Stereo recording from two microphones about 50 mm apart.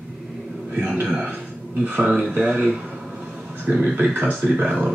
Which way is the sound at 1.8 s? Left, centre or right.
Right.